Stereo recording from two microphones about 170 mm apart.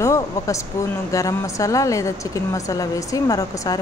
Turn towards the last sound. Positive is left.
turn(degrees=20)  # may be behind; listen again after turning